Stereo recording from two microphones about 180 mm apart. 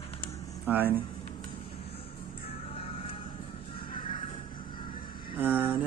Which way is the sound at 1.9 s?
35° left (ahead or behind).